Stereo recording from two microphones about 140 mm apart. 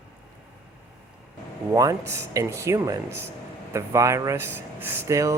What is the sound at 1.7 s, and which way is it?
Speech, 25° right (ahead or behind).